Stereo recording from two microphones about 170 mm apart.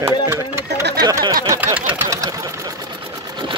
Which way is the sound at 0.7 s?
80° right.